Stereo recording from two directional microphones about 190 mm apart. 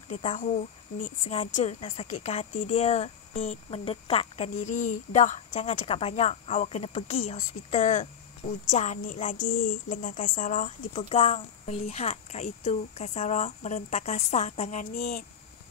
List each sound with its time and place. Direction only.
0.1 s speech: 40° left (ahead or behind)